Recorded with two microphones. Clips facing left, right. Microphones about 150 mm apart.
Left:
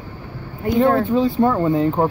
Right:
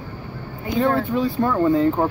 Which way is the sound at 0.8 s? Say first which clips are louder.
Left 3 dB; 20° left (ahead or behind).